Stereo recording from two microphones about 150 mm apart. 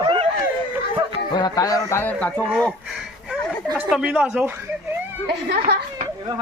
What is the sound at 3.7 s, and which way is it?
Speech, 5° right (ahead or behind).